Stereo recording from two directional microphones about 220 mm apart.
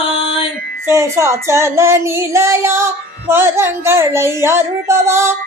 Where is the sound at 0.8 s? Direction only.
10° right (ahead or behind).